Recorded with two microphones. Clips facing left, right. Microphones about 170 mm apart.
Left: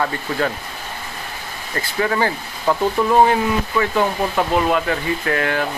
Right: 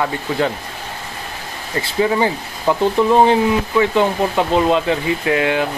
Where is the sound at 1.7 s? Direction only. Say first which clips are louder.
Right 3 dB; 15° right (ahead or behind).